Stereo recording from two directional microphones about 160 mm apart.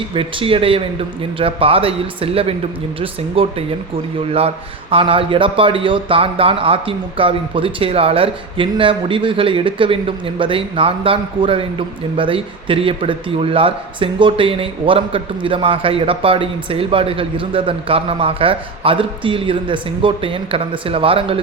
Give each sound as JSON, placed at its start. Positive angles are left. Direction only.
{"t": 0.1, "sound": "a man's voice", "side_deg": -35}